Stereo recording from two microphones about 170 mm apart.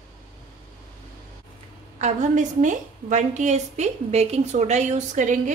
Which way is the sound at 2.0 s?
45° right (ahead or behind).